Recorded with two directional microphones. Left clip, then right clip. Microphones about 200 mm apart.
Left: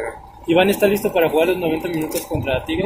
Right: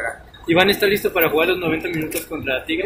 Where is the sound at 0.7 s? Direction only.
30° left (ahead or behind).